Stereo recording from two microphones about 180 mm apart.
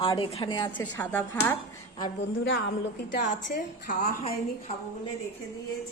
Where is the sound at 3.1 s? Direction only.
65° left (ahead or behind).